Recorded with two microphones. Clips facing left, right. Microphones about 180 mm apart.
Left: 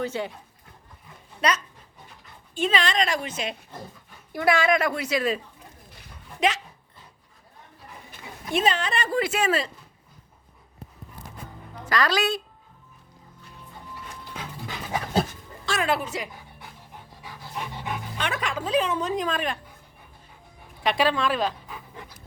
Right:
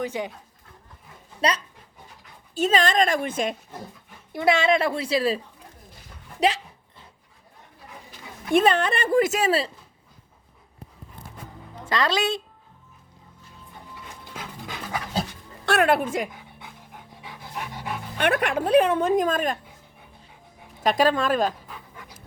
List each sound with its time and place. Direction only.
0.0 s speech: 15° right (ahead or behind)
1.4 s speech: 30° right (ahead or behind)
2.6 s speech: 45° right (ahead or behind)
4.3 s a woman's voice: 25° right (ahead or behind)
6.4 s speech: 35° right (ahead or behind)
8.5 s speech: 55° right (ahead or behind); by 9.7 s 35° right (ahead or behind)
11.9 s a woman's voice: 25° right (ahead or behind)
15.6 s speech: 60° right (ahead or behind)
17.2 s dog: 20° right (ahead or behind)
17.5 s dog: 10° right (ahead or behind)
18.2 s speech: 60° right (ahead or behind); by 19.5 s 45° right (ahead or behind)
20.8 s speech: 45° right (ahead or behind)